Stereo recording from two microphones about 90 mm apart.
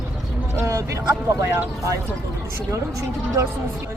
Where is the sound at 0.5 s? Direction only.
35° right (ahead or behind).